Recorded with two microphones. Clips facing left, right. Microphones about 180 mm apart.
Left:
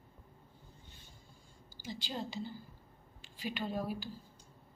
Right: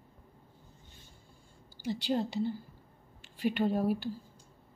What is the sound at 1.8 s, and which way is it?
A woman's voice, 65° right (ahead or behind).